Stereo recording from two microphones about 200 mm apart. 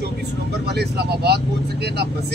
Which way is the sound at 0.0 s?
55° right (ahead or behind).